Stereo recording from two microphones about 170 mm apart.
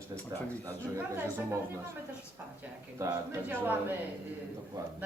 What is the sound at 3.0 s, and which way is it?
Speech, 20° right (ahead or behind).